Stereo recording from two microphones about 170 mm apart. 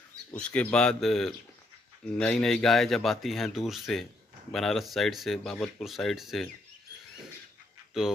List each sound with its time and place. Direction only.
0.3 s speech: 10° left (ahead or behind)